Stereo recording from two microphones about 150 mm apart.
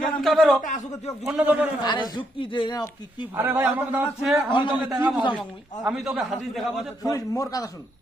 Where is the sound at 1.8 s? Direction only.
30° left (ahead or behind).